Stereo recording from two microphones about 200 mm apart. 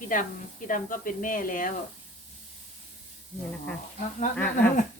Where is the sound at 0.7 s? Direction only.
45° left (ahead or behind).